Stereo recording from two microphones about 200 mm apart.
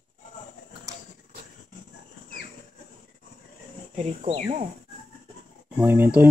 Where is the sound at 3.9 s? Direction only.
30° right (ahead or behind).